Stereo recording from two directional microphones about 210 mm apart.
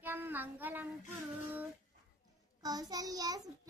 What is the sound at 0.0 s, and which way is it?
Child singing, 10° right (ahead or behind).